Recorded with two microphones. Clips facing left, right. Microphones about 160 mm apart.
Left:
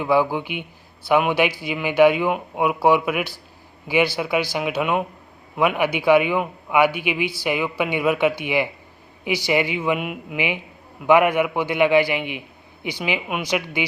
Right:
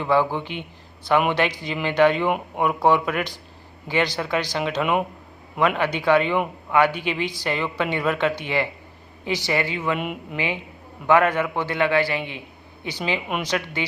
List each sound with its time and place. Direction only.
0.0 s speech: 10° left (ahead or behind)